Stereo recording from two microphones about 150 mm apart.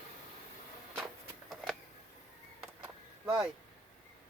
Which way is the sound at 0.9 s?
Centre (ahead or behind).